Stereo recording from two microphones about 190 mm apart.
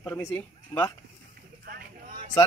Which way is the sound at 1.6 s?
50° right (ahead or behind).